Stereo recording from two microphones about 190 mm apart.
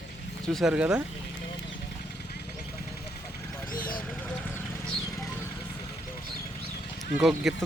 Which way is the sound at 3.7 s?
50° left (ahead or behind).